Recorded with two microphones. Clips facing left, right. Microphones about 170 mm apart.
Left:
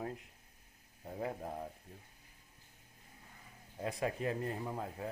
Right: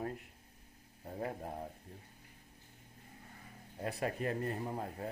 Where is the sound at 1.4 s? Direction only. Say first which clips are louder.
Left 1 dB; 20° right (ahead or behind).